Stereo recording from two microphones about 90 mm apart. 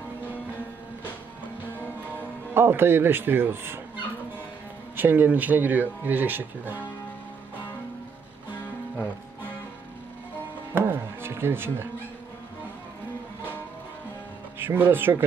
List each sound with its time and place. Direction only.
2.5 s speech: 25° right (ahead or behind)
4.9 s speech: 20° right (ahead or behind)
10.7 s music: 25° right (ahead or behind)
14.6 s speech: 25° right (ahead or behind)